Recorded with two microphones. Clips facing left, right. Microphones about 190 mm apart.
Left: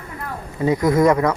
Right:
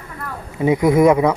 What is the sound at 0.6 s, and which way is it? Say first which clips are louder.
Speech: right 3 dB; 15° right (ahead or behind).